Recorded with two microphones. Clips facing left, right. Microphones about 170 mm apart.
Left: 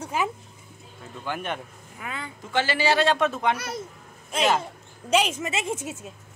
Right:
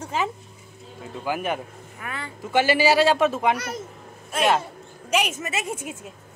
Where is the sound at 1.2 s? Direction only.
5° right (ahead or behind).